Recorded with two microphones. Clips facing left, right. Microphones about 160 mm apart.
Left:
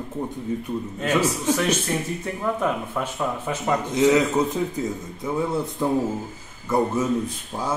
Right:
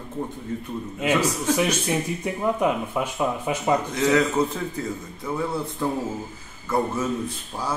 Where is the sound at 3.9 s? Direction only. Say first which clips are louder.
Left 3 dB; 20° left (ahead or behind).